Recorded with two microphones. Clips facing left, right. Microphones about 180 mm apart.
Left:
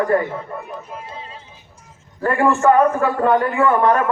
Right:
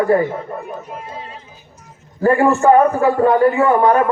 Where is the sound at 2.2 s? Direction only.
30° right (ahead or behind).